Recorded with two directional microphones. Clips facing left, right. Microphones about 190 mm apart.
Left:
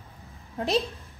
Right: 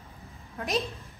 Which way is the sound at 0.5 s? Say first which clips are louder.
Left 4 dB; 30° left (ahead or behind).